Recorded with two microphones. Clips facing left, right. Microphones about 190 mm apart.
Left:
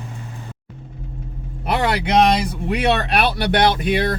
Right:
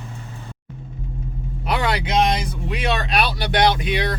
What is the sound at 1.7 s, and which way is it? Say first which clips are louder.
Speech: left 4 dB; 55° left (ahead or behind).